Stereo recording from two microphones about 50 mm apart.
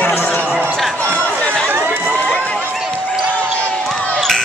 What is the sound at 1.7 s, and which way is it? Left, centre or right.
Crowd, right.